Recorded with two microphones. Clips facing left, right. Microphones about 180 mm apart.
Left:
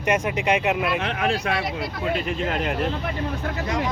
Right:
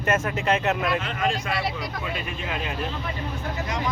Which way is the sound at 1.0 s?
65° left (ahead or behind).